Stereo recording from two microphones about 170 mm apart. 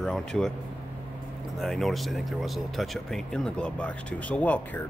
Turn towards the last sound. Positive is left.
turn(degrees=10)  # may be behind; listen again after turning